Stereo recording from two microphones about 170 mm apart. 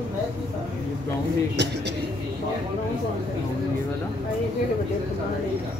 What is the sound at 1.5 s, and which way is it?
Speech, 90° right.